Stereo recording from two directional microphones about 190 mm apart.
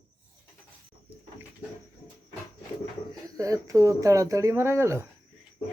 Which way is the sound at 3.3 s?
20° right (ahead or behind).